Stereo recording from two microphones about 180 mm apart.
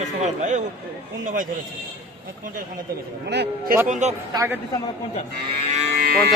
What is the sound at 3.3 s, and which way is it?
Speech, 60° right (ahead or behind).